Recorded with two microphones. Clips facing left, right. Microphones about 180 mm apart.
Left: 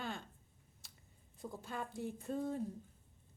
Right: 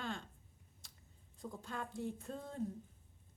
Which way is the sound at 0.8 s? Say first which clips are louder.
Left 1 dB; 5° left (ahead or behind).